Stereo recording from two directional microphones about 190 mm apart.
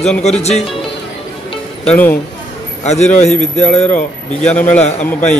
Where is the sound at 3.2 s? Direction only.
35° left (ahead or behind).